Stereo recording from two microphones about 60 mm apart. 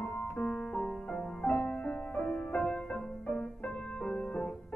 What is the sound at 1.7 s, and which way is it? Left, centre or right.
Music, left.